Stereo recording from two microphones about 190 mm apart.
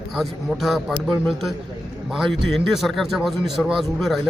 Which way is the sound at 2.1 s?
Centre (ahead or behind).